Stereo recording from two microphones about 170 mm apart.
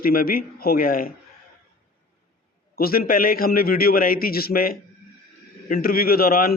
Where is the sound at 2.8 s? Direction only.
60° left (ahead or behind).